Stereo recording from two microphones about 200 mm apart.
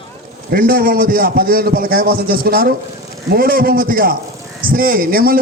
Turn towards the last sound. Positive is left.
turn(degrees=-45)  # may be behind; listen again after turning